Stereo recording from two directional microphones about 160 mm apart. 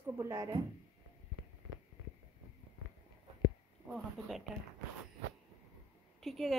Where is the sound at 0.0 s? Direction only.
15° right (ahead or behind).